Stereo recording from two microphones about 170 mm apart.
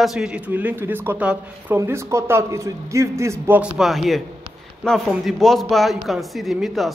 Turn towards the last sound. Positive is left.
turn(degrees=0)  # may be behind; listen again after turning